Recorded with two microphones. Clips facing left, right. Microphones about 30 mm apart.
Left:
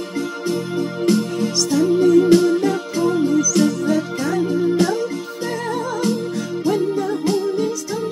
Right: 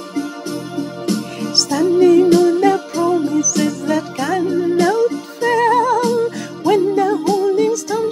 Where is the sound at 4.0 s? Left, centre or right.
Right.